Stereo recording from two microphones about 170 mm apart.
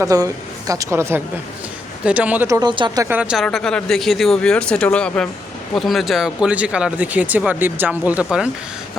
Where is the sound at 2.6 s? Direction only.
25° right (ahead or behind).